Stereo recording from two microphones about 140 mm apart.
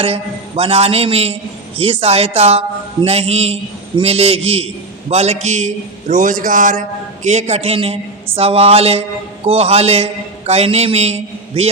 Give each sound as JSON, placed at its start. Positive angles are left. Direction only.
{"t": 0.0, "sound": "a man's voice", "side_deg": -45}
{"t": 7.3, "sound": "a man's voice", "side_deg": -55}